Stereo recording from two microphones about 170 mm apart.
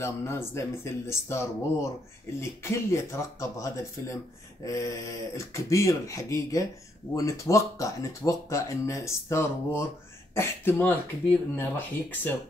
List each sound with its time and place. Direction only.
0.0 s speech: 15° left (ahead or behind)